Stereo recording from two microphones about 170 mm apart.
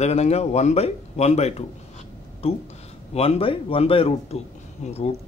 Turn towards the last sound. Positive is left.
turn(degrees=40)  # may be behind; listen again after turning